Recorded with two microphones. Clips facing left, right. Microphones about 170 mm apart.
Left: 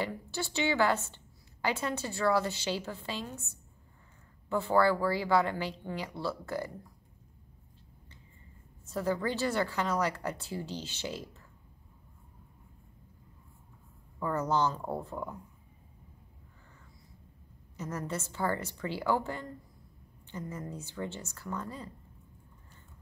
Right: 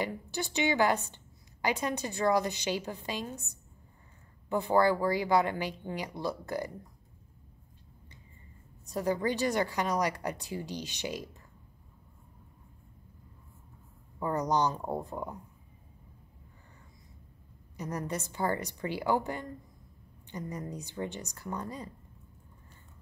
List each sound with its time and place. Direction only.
0.0 s a woman's voice: 15° right (ahead or behind)
8.8 s a woman's voice: 15° right (ahead or behind)
14.2 s a woman's voice: 15° right (ahead or behind)
17.7 s a woman's voice: 15° right (ahead or behind)